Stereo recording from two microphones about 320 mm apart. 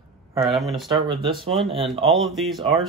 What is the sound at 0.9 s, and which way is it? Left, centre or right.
Speech, centre.